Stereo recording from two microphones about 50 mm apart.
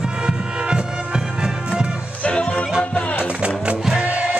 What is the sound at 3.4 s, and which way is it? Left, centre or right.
Music, right.